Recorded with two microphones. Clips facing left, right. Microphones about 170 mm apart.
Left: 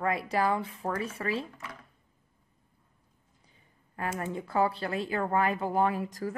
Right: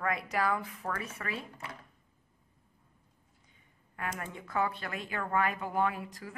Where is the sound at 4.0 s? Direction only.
30° left (ahead or behind).